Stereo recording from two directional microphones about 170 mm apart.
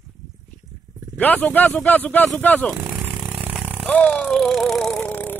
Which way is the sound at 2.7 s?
10° right (ahead or behind).